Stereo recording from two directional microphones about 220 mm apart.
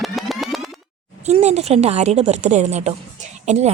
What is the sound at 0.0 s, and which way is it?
Boing, centre (ahead or behind).